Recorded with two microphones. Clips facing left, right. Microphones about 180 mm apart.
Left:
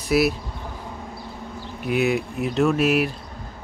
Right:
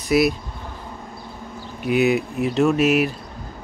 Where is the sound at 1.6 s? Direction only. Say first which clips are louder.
Right 3 dB; centre (ahead or behind).